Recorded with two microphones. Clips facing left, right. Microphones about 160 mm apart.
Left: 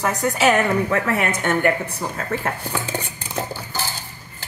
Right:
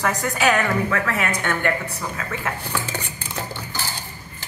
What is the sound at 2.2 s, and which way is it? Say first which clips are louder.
Speech: left 5 dB; 40° left (ahead or behind).